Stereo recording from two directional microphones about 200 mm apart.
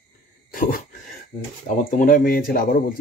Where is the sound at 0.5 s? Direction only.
45° left (ahead or behind).